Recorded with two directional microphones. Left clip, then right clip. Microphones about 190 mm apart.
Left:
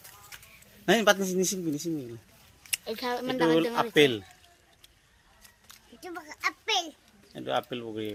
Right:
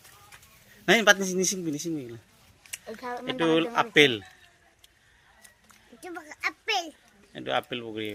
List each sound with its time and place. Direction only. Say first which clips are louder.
0.9 s a man's voice: right 3 dB; 5° left (ahead or behind)
2.6 s a sound: left 5 dB; 55° left (ahead or behind)
3.2 s a man's voice: right 1 dB; 5° left (ahead or behind)
6.0 s a child's voice: even; 15° left (ahead or behind)
7.3 s a man's voice: right 1 dB; 5° left (ahead or behind)